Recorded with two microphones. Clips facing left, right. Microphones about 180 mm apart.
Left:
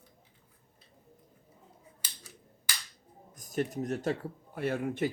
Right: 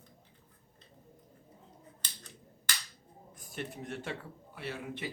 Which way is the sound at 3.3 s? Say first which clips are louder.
Left 9 dB; 40° left (ahead or behind).